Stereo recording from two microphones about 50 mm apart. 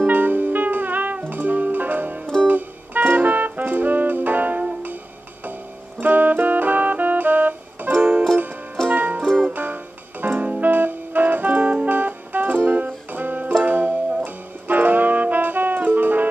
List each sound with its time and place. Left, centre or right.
0.0 s music: right
5.9 s music: right
9.2 s music: centre
9.5 s music: right